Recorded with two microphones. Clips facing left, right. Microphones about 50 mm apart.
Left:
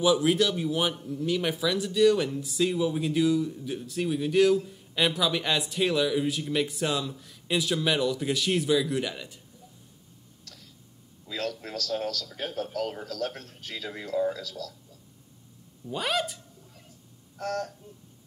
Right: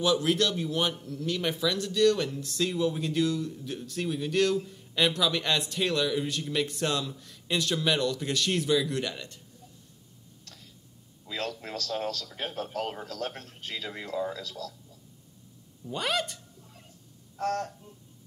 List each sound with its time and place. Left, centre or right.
0.0 s a man's voice: centre
11.2 s a man's voice: right
15.9 s a man's voice: centre
17.4 s a man's voice: right